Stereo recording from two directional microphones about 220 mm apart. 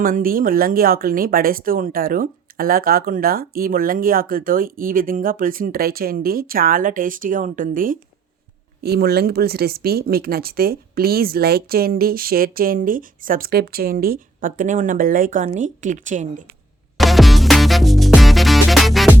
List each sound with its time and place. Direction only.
0.0 s speech: 40° right (ahead or behind)
17.0 s music: centre (ahead or behind)